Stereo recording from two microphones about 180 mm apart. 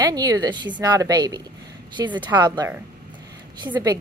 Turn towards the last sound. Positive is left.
turn(degrees=-25)  # may be behind; listen again after turning